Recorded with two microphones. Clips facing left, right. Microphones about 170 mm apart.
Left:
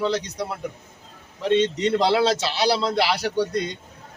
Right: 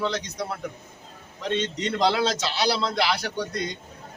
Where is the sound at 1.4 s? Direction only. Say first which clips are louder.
Left 7 dB; 30° left (ahead or behind).